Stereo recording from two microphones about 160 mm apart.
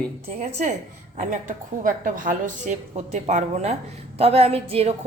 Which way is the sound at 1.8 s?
55° right (ahead or behind).